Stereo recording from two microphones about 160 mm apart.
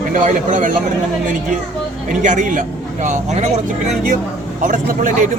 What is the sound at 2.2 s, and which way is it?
A man's voice, 50° right (ahead or behind).